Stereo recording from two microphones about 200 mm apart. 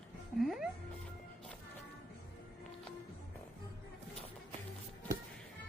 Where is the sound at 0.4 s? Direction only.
Centre (ahead or behind).